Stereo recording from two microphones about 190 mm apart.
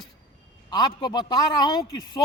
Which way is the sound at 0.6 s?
20° left (ahead or behind).